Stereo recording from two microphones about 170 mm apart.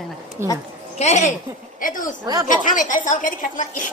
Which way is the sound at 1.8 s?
50° left (ahead or behind).